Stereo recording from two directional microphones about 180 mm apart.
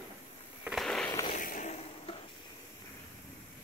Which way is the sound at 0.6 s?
Centre (ahead or behind).